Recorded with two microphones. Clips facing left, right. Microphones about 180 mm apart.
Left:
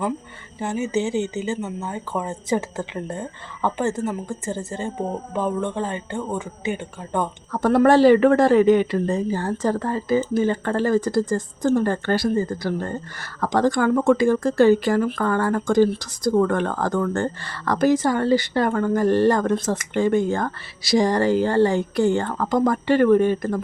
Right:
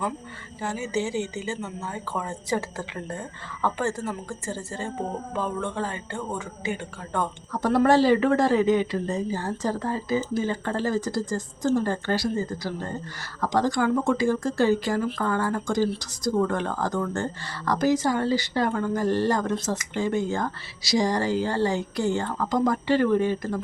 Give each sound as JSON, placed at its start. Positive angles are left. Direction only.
{"t": 0.6, "sound": "speech", "side_deg": 20}
{"t": 7.5, "sound": "a woman's voice", "side_deg": 55}